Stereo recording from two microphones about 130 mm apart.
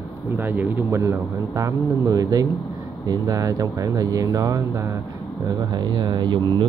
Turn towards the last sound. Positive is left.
turn(degrees=-35)  # may be behind; listen again after turning